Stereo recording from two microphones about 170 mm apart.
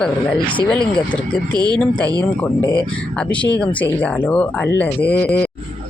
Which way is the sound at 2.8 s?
5° left (ahead or behind).